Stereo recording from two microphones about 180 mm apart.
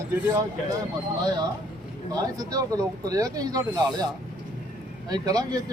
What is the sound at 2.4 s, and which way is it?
Speech, 20° right (ahead or behind).